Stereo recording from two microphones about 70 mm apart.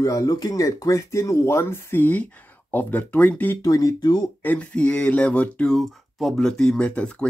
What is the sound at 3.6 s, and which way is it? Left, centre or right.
Speech, left.